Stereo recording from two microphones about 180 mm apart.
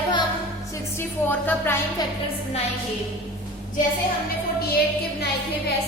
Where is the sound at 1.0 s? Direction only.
10° left (ahead or behind).